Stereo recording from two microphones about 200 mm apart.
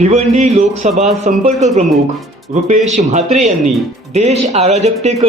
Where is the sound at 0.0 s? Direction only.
35° right (ahead or behind).